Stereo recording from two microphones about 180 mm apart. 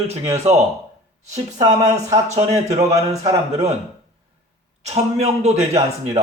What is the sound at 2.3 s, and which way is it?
A man's voice, 40° right (ahead or behind).